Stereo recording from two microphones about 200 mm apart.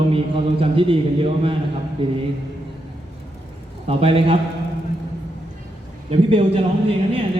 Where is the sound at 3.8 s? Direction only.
30° right (ahead or behind).